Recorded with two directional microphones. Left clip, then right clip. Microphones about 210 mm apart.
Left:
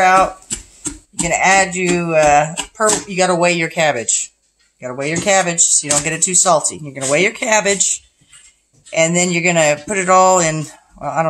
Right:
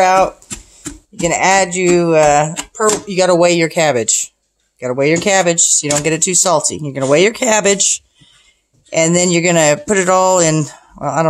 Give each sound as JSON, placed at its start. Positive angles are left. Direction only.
{"t": 0.0, "sound": "speech", "side_deg": -50}